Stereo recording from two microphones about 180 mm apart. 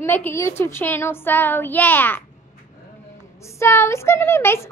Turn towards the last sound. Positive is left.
turn(degrees=15)  # may be behind; listen again after turning